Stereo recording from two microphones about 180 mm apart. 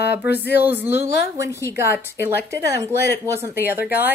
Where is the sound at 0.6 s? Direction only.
10° right (ahead or behind).